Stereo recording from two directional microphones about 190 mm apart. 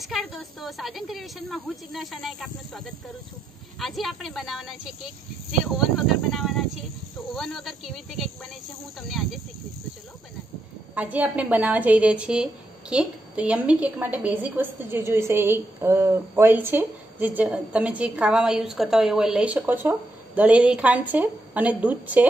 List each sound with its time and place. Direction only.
0.0 s a woman's voice: centre (ahead or behind)
11.0 s a woman's voice: 10° right (ahead or behind)